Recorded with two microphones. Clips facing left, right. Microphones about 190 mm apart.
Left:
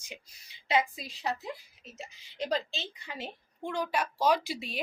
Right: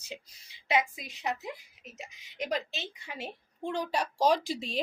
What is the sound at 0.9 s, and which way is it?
Speech, 20° right (ahead or behind).